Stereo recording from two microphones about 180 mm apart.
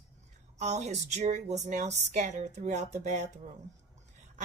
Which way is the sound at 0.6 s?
40° right (ahead or behind).